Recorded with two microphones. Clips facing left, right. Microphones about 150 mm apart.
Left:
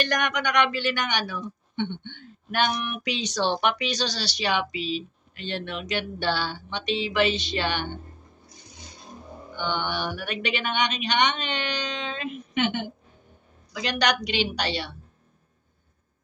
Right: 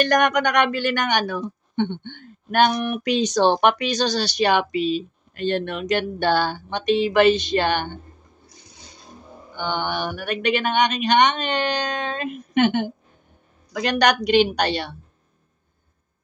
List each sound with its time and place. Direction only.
0.0 s a woman's voice: 50° right (ahead or behind)
9.6 s a woman's voice: 45° right (ahead or behind)